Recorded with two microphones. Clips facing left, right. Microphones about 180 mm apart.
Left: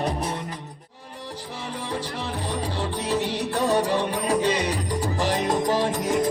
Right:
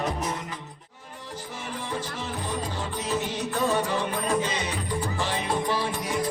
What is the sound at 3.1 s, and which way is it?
Music, 35° left (ahead or behind).